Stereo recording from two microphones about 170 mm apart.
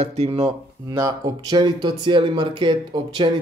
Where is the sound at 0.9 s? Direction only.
20° right (ahead or behind).